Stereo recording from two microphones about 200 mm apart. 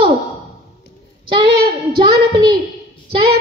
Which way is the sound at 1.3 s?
25° right (ahead or behind).